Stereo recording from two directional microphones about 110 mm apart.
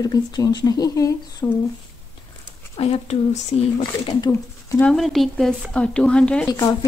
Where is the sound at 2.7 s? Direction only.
65° left (ahead or behind); by 3.8 s 90° left.